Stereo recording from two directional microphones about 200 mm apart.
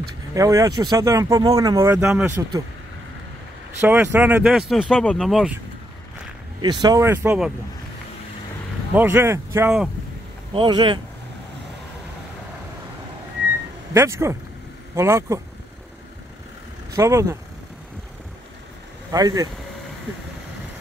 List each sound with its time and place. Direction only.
0.3 s speech: 15° right (ahead or behind)
3.8 s speech: 10° right (ahead or behind)
6.6 s speech: 20° right (ahead or behind)
8.9 s speech: 10° right (ahead or behind)
10.5 s speech: 25° right (ahead or behind)
13.9 s speech: 15° right (ahead or behind)
16.9 s speech: 15° right (ahead or behind)
19.1 s speech: 20° right (ahead or behind)